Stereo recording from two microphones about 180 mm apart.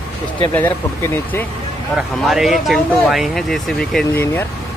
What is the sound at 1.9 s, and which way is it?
Speech, centre (ahead or behind).